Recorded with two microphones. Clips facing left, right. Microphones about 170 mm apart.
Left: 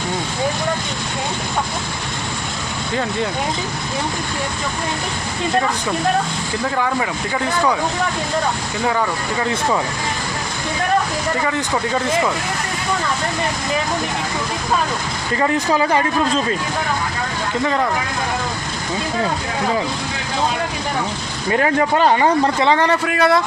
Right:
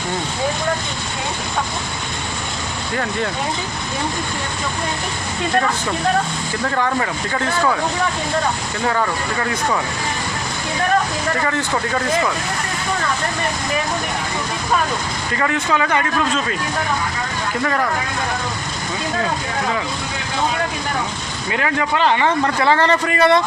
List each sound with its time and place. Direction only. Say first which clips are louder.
6.7 s speech: right 1 dB; 10° left (ahead or behind)
8.9 s speech: even; 10° left (ahead or behind)
11.3 s speech: even; 15° left (ahead or behind)
15.4 s speech: left 2 dB; 30° left (ahead or behind)
21.5 s speech: left 4 dB; 40° left (ahead or behind)
22.4 s speech: even; 20° left (ahead or behind); by 23.4 s 5° left (ahead or behind)